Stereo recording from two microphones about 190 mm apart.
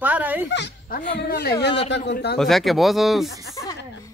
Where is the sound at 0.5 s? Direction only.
65° left (ahead or behind).